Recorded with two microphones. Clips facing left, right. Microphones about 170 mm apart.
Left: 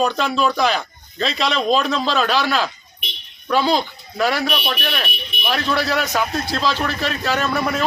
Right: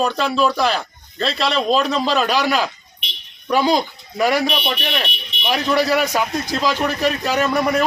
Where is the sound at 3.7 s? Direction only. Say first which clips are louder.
Right 1 dB; 15° right (ahead or behind).